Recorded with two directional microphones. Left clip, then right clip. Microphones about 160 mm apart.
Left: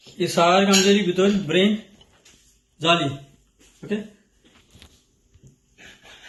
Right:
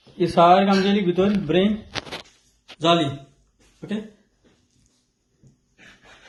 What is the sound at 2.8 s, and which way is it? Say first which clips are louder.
Speech: right 1 dB; 25° right (ahead or behind).